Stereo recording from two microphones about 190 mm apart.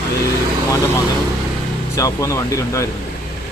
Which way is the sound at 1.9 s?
15° left (ahead or behind).